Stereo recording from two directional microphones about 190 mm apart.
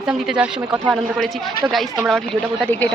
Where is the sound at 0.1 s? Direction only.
5° right (ahead or behind).